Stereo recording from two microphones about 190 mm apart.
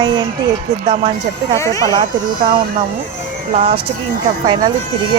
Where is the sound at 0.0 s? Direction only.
25° right (ahead or behind).